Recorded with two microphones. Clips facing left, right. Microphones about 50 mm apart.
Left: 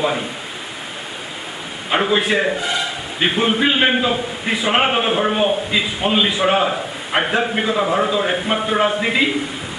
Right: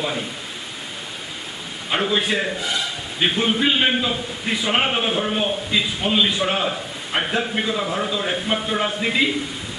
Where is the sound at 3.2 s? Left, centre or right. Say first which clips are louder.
Left 3 dB; centre.